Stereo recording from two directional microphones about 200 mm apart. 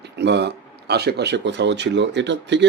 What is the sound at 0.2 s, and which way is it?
Speech, 60° right (ahead or behind).